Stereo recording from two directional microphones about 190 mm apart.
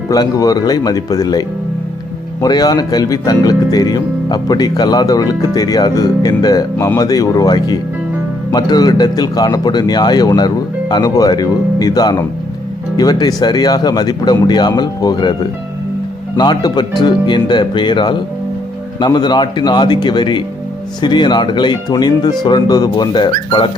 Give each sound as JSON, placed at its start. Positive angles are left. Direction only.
{"t": 0.1, "sound": "speech", "side_deg": 20}
{"t": 16.4, "sound": "speech", "side_deg": 20}